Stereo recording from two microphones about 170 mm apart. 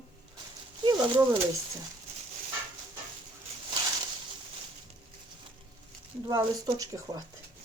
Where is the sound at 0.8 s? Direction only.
25° right (ahead or behind).